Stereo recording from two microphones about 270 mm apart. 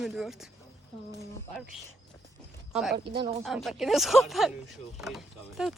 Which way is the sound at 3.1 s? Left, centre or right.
Right.